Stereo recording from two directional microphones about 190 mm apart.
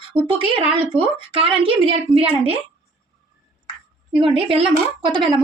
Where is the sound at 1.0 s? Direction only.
25° right (ahead or behind).